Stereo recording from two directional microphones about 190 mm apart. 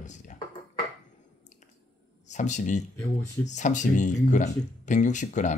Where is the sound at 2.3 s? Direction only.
40° left (ahead or behind).